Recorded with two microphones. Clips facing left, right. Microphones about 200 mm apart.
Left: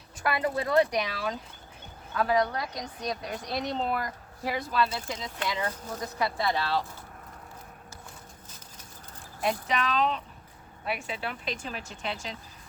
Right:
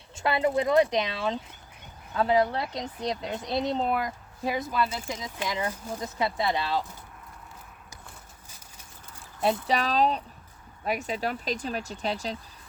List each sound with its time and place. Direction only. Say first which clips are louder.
0.2 s speech: right 4 dB; 25° right (ahead or behind)
6.0 s speech: right 1 dB; 20° right (ahead or behind)
9.4 s speech: right 3 dB; 35° right (ahead or behind)